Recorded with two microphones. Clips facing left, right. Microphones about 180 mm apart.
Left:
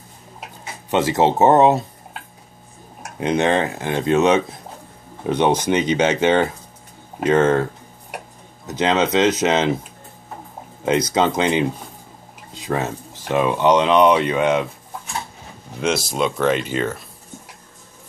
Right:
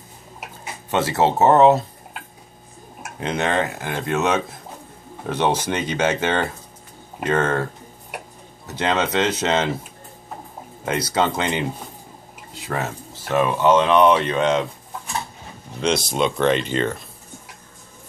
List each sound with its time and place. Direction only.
0.8 s speech: 15° left (ahead or behind)
3.2 s speech: 20° left (ahead or behind)
8.7 s speech: 15° left (ahead or behind)
10.9 s speech: 15° left (ahead or behind)
12.6 s speech: 15° left (ahead or behind)
15.8 s speech: 5° left (ahead or behind)